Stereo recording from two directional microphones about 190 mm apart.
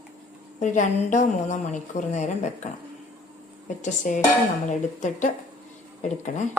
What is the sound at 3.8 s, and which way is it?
A woman's voice, 40° left (ahead or behind).